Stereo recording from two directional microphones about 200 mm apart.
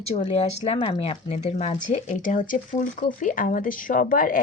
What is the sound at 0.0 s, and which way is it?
A woman's voice, 30° left (ahead or behind).